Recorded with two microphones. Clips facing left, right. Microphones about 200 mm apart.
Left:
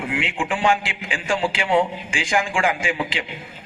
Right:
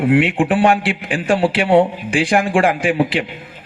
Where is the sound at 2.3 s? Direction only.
60° right (ahead or behind).